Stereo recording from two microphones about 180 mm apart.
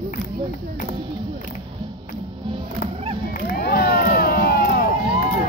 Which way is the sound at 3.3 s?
55° left (ahead or behind).